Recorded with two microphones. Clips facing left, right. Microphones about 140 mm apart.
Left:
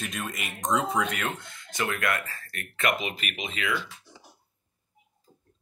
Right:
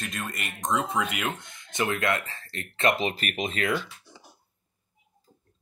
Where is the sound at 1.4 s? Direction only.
20° right (ahead or behind); by 3.8 s 40° right (ahead or behind).